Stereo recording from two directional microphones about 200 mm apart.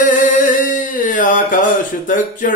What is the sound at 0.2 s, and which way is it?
Music, 40° left (ahead or behind).